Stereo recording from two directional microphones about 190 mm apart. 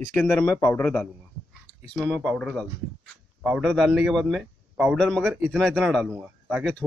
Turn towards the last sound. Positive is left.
turn(degrees=0)  # may be behind; listen again after turning